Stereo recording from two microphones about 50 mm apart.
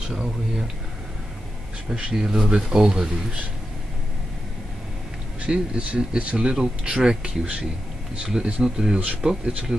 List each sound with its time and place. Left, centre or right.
1.9 s speech: centre
5.4 s speech: right